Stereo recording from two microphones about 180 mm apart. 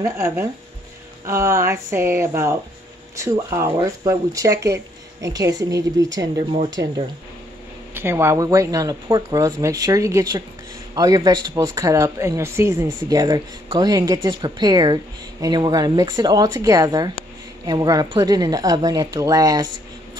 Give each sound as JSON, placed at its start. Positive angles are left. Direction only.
{"t": 0.0, "sound": "speech", "side_deg": -15}
{"t": 7.9, "sound": "speech", "side_deg": -10}